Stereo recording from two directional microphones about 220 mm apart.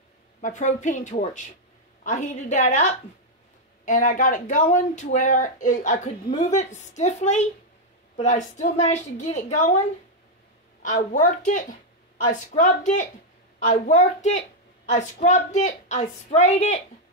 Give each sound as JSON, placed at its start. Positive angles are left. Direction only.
{"t": 0.4, "sound": "speech", "side_deg": 35}
{"t": 10.8, "sound": "speech", "side_deg": 35}